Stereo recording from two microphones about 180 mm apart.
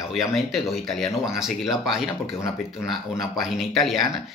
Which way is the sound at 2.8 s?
Centre (ahead or behind).